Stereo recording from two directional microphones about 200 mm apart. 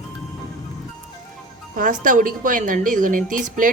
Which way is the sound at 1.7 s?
40° right (ahead or behind).